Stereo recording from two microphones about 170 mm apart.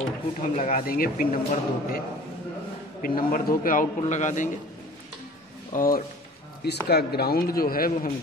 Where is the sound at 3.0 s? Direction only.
55° left (ahead or behind).